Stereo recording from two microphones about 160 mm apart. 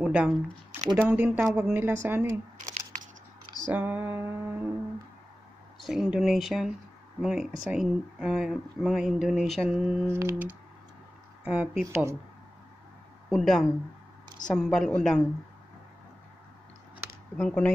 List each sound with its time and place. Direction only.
0.0 s speech: 5° right (ahead or behind)
3.6 s speech: 10° right (ahead or behind)
5.8 s speech: centre (ahead or behind)
10.1 s speech: 15° right (ahead or behind)
11.8 s speech: 15° right (ahead or behind)
13.3 s speech: centre (ahead or behind)
17.4 s speech: 5° left (ahead or behind)